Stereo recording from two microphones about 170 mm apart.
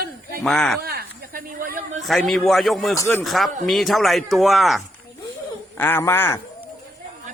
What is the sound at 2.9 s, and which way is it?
Speech, 20° left (ahead or behind).